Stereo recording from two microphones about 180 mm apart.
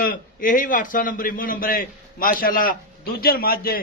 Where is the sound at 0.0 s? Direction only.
55° left (ahead or behind).